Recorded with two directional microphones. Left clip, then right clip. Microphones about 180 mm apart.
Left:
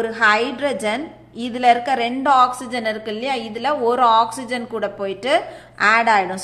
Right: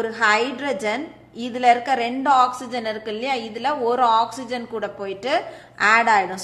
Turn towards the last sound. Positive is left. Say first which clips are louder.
# left 1 dB
turn(degrees=10)  # may be behind; listen again after turning